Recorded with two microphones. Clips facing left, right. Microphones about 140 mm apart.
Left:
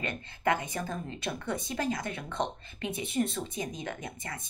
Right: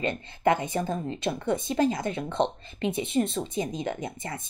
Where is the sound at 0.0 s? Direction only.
25° right (ahead or behind).